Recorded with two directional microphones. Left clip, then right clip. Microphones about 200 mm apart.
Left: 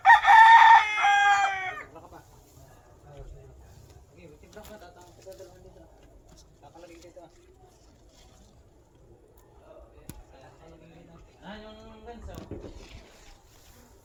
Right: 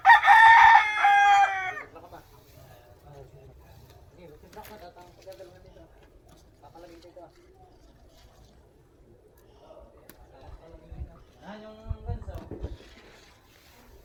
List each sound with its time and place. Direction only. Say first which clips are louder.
0.0 s chicken: even; 20° right (ahead or behind)
1.5 s chicken: even; 15° right (ahead or behind)
4.6 s bird: right 2 dB; 70° left (ahead or behind)
11.4 s a sound: even; 50° left (ahead or behind)